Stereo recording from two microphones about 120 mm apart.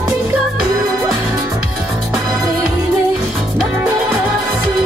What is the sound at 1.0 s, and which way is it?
Music, 15° right (ahead or behind).